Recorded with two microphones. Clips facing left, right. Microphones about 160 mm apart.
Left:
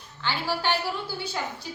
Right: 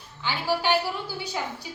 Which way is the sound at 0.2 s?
15° right (ahead or behind).